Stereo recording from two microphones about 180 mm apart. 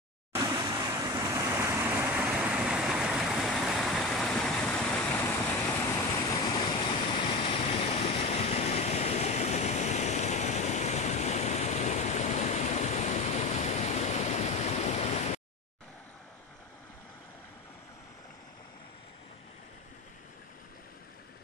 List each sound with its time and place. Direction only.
0.3 s vehicle: 20° right (ahead or behind); by 15.4 s 40° left (ahead or behind)